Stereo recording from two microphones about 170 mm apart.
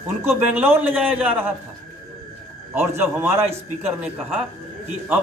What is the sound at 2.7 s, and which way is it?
Speech, 15° right (ahead or behind).